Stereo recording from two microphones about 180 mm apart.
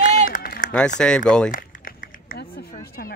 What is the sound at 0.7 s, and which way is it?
Speech, 5° left (ahead or behind).